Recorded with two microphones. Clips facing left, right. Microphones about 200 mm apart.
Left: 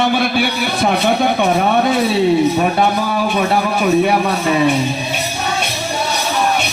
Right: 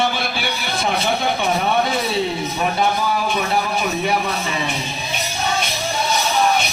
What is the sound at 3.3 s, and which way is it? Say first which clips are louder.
A man's voice: left 5 dB; 50° left (ahead or behind).